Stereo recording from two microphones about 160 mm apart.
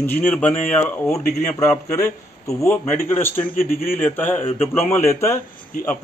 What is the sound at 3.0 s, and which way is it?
Speech, 15° left (ahead or behind).